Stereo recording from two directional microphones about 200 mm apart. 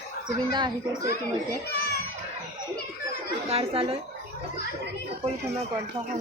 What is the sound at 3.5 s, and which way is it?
Speech, 30° right (ahead or behind).